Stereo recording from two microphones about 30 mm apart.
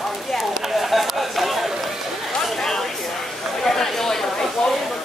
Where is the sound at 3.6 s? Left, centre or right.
Centre.